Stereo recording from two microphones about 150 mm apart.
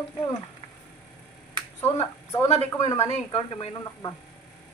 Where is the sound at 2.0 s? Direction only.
45° left (ahead or behind).